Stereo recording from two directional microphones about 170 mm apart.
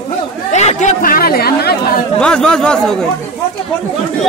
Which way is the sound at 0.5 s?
45° left (ahead or behind).